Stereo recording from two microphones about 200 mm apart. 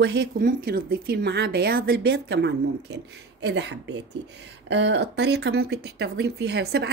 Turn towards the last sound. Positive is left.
turn(degrees=-55)  # may be behind; listen again after turning